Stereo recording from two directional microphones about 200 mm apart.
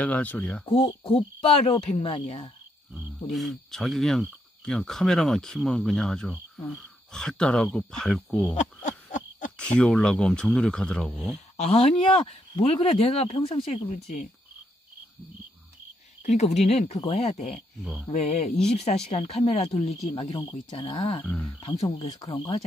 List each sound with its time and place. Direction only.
0.0 s speech: 5° left (ahead or behind)
0.7 s speech: 30° left (ahead or behind)
2.9 s speech: centre (ahead or behind)
8.5 s a sound: 40° left (ahead or behind)
9.6 s speech: 5° left (ahead or behind)
11.3 s speech: 35° left (ahead or behind)
16.2 s speech: 35° left (ahead or behind)
21.2 s speech: 5° left (ahead or behind)
21.5 s speech: 25° left (ahead or behind)